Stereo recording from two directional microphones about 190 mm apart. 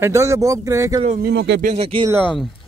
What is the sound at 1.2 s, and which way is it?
Speech, 65° right (ahead or behind).